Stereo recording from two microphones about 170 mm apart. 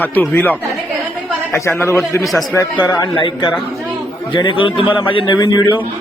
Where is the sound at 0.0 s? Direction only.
10° left (ahead or behind).